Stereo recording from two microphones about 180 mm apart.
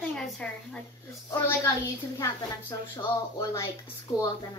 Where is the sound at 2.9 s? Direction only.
20° left (ahead or behind).